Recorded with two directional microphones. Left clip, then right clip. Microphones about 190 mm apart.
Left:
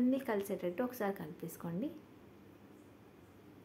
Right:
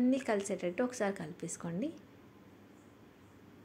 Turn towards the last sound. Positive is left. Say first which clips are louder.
# right 3 dB
turn(degrees=-10)  # may be behind; listen again after turning